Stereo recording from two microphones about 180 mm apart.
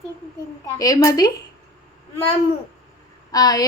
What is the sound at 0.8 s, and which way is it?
Speech, 20° left (ahead or behind).